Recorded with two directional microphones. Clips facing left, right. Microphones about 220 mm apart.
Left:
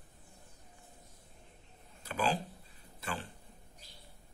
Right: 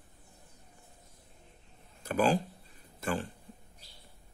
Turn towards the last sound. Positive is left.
turn(degrees=-45)  # may be behind; listen again after turning